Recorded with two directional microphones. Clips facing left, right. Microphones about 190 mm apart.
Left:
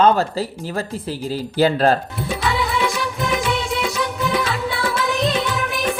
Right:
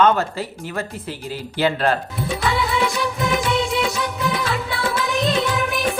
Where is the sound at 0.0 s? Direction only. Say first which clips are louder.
Left 2 dB; 35° left (ahead or behind).